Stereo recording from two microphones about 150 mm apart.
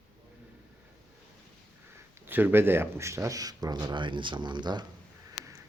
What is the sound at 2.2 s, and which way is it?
Speech, 15° right (ahead or behind).